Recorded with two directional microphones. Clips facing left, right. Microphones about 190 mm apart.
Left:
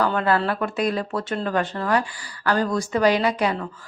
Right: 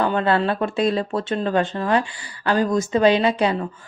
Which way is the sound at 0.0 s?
25° right (ahead or behind).